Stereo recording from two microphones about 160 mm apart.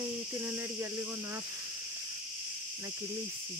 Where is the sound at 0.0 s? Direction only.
15° right (ahead or behind).